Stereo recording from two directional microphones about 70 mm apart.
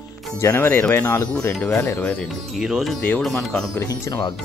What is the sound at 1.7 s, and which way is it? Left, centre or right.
Speech, left.